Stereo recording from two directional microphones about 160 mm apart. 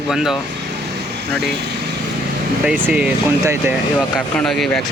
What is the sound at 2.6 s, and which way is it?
Speech, 5° right (ahead or behind).